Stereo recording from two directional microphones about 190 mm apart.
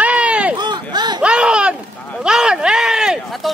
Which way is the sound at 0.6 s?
25° right (ahead or behind).